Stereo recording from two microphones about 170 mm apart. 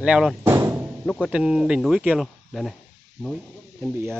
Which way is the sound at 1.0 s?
5° left (ahead or behind).